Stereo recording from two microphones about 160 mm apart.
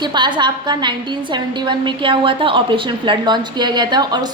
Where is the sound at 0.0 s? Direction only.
30° right (ahead or behind).